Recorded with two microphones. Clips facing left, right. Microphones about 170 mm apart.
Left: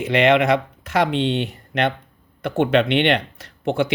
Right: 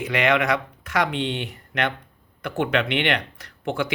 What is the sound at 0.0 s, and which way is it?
Speech, 25° left (ahead or behind).